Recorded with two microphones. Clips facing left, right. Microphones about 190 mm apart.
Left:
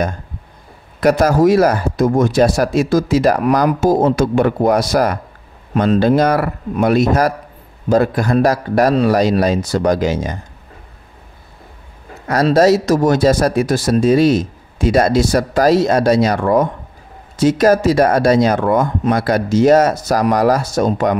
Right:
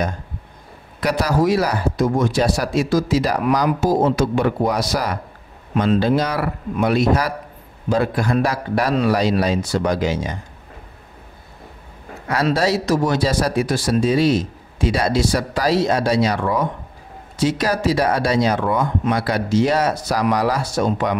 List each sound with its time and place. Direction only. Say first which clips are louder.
1.0 s speech: left 6 dB; 45° left (ahead or behind)
12.3 s speech: left 7 dB; 40° left (ahead or behind)